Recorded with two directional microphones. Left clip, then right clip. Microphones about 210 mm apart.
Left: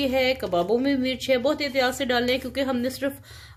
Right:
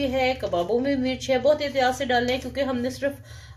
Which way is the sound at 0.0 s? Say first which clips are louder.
Left 1 dB; 45° left (ahead or behind).